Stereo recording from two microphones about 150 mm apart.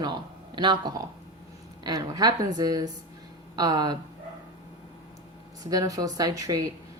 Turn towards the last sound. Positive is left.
turn(degrees=-25)  # may be behind; listen again after turning